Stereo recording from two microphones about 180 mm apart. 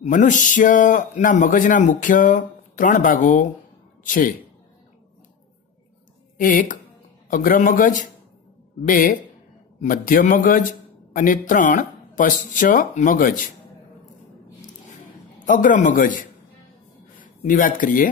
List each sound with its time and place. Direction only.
0.0 s a man's voice: 45° left (ahead or behind)
6.4 s a man's voice: 50° left (ahead or behind)
15.4 s a man's voice: 45° left (ahead or behind)